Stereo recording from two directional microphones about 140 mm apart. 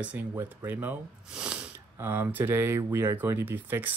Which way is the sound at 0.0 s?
10° right (ahead or behind).